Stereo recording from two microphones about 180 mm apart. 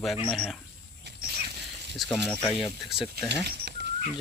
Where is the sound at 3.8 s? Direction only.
70° right (ahead or behind).